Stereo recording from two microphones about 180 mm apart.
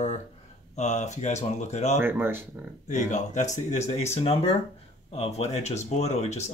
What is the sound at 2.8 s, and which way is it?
Speech, 40° left (ahead or behind).